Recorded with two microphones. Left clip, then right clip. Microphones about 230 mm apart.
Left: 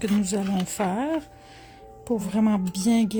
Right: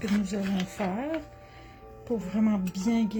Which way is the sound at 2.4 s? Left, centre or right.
Left.